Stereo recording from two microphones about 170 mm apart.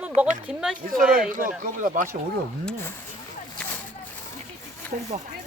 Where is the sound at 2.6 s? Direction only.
10° left (ahead or behind).